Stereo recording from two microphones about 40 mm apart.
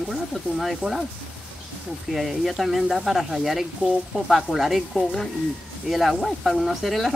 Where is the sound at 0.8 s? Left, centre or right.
Right.